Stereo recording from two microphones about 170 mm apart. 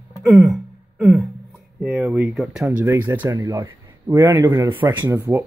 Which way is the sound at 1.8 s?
5° right (ahead or behind).